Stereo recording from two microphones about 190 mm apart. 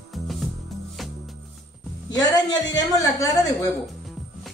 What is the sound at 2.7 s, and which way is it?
Speech, 20° left (ahead or behind).